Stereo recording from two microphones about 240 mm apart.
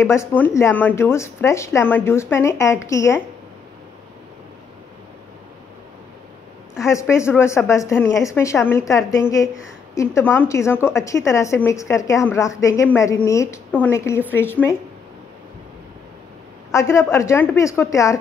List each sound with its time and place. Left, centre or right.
0.1 s a woman's voice: centre
6.8 s a woman's voice: centre
16.7 s a woman's voice: centre